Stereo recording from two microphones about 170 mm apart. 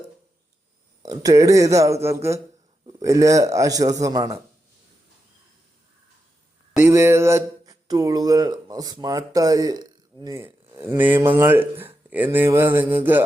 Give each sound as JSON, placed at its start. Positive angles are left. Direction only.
{"t": 1.0, "sound": "a man's voice", "side_deg": -20}
{"t": 6.8, "sound": "speech", "side_deg": -15}